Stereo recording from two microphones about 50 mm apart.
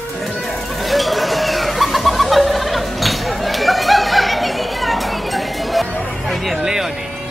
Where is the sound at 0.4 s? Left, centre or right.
Centre.